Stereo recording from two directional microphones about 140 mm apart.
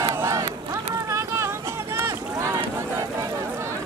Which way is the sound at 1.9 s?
20° right (ahead or behind).